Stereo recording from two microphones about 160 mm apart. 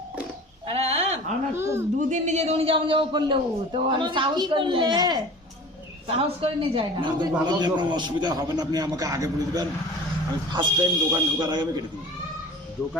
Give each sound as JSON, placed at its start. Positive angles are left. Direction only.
{"t": 0.7, "sound": "a sound", "side_deg": -40}
{"t": 1.5, "sound": "speech", "side_deg": -15}
{"t": 2.0, "sound": "a man's voice", "side_deg": -50}
{"t": 6.1, "sound": "a man's voice", "side_deg": -35}